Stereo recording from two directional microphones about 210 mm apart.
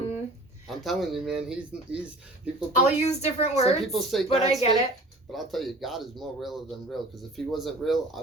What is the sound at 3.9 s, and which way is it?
Speech, centre (ahead or behind).